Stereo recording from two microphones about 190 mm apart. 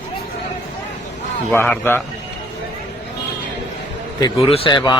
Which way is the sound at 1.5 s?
10° left (ahead or behind).